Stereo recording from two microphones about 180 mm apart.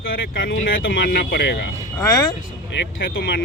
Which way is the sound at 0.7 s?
90° left.